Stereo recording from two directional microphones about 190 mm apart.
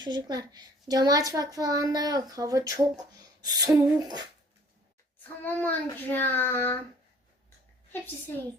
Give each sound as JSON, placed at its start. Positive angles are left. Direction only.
{"t": 0.0, "sound": "a child's voice", "side_deg": -20}
{"t": 5.5, "sound": "a child's voice", "side_deg": 10}